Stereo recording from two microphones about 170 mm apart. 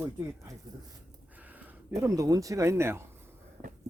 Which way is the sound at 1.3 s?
10° right (ahead or behind).